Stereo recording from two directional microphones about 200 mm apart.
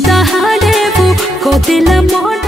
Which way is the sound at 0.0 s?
Centre (ahead or behind).